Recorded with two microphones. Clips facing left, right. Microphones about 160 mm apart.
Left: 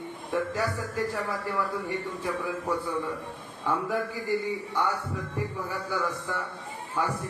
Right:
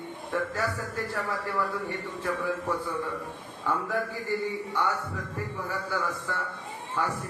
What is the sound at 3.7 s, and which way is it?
A man's voice, 15° left (ahead or behind).